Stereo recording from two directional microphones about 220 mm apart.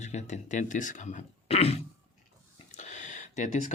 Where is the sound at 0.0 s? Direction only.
30° left (ahead or behind).